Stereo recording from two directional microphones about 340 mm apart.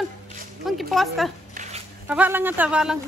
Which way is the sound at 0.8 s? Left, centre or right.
Centre.